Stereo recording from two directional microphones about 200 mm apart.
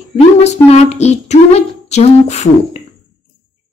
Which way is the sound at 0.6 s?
30° left (ahead or behind).